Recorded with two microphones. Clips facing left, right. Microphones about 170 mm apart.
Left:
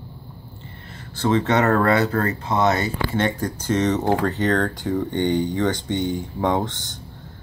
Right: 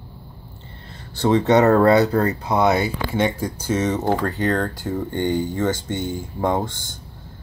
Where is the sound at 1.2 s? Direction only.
15° right (ahead or behind).